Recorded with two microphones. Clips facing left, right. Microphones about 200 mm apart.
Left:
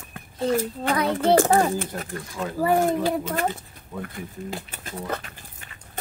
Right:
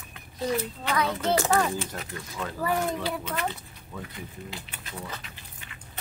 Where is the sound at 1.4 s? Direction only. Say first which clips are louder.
Left 6 dB; 45° left (ahead or behind).